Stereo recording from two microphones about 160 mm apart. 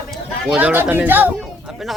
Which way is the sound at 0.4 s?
5° right (ahead or behind).